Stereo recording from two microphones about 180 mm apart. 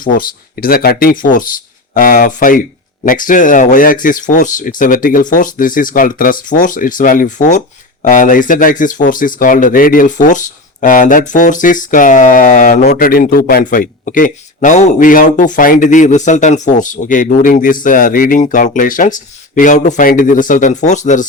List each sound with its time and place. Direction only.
0.0 s speech: 50° left (ahead or behind)